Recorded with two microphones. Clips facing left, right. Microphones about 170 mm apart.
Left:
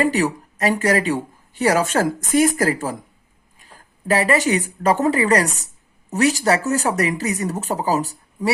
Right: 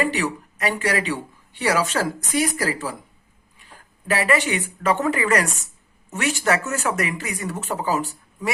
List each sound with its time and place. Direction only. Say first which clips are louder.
0.0 s speech: left 4 dB; 40° left (ahead or behind)